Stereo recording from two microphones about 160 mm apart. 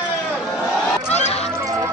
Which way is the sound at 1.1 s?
40° left (ahead or behind).